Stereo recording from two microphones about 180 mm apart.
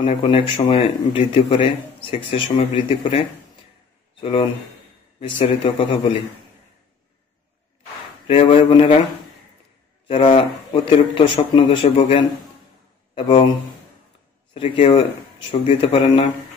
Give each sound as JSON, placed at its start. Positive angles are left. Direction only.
{"t": 0.0, "sound": "speech", "side_deg": 30}
{"t": 8.3, "sound": "speech", "side_deg": 30}
{"t": 10.0, "sound": "speech", "side_deg": 30}
{"t": 14.5, "sound": "speech", "side_deg": 30}